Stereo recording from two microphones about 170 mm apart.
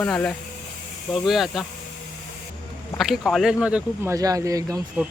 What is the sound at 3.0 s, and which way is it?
Speech, centre (ahead or behind).